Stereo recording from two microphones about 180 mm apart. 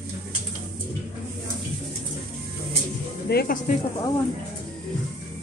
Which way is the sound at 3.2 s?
55° left (ahead or behind).